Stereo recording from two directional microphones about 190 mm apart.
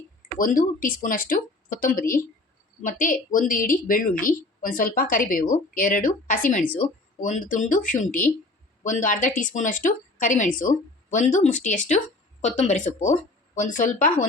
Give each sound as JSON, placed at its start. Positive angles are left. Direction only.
{"t": 0.3, "sound": "a woman's voice", "side_deg": 45}